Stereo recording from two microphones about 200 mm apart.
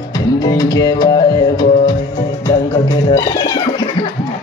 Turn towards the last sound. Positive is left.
turn(degrees=25)  # may be behind; listen again after turning